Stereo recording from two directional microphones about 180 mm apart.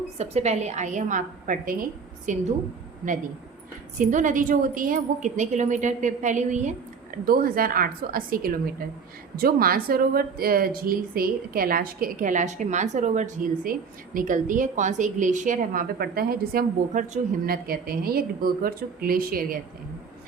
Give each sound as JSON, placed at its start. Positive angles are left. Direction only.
{"t": 0.2, "sound": "speech", "side_deg": -35}
{"t": 3.9, "sound": "speech", "side_deg": -45}